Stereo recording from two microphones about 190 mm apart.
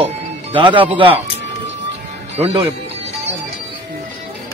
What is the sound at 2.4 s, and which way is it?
Speech, 30° right (ahead or behind).